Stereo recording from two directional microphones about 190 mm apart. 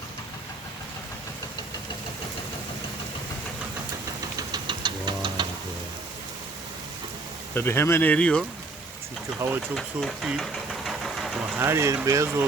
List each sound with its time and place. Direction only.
4.4 s engine knocking: 25° right (ahead or behind)
7.5 s speech: 10° left (ahead or behind)
9.7 s engine: centre (ahead or behind)
11.6 s speech: 15° right (ahead or behind)